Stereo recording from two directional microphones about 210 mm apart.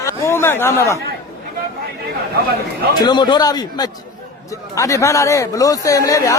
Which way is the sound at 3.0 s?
20° left (ahead or behind).